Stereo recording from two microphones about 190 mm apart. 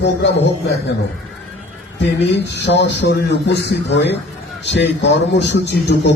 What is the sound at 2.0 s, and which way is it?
A man's voice, 65° left (ahead or behind).